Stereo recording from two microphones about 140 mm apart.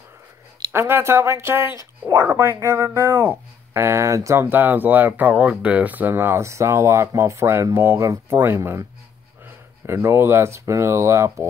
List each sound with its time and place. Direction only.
0.7 s speech: 15° right (ahead or behind)
9.8 s speech: 15° right (ahead or behind)